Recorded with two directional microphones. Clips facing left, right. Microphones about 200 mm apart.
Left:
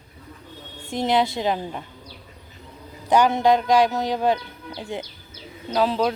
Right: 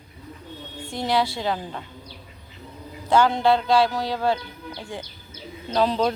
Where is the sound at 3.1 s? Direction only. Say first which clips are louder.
Left 1 dB; 15° left (ahead or behind).